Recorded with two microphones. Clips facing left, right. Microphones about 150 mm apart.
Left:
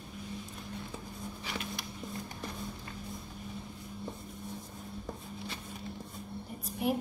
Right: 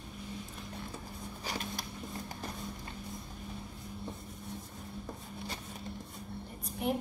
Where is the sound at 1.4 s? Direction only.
40° right (ahead or behind).